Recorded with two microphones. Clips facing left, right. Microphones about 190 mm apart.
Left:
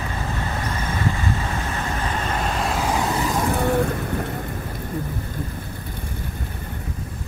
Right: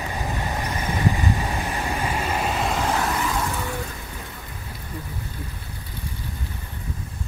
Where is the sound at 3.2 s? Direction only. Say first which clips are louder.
Left 6 dB; 55° left (ahead or behind).